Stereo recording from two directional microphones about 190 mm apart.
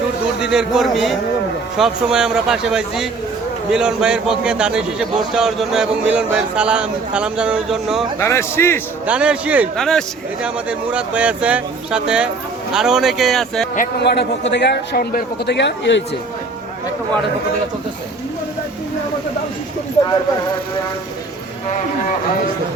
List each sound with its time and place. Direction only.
0.3 s a man's voice: 5° right (ahead or behind)
8.2 s a man's voice: 15° left (ahead or behind)
9.0 s a man's voice: 5° right (ahead or behind)
14.0 s a man's voice: 60° left (ahead or behind)